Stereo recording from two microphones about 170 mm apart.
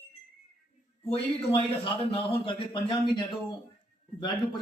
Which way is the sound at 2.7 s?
25° left (ahead or behind).